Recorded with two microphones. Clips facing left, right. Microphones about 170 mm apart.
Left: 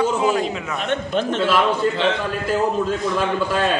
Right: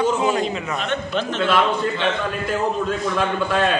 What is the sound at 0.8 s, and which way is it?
Speech, 50° left (ahead or behind).